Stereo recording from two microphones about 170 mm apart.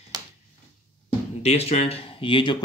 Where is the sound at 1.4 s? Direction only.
40° left (ahead or behind).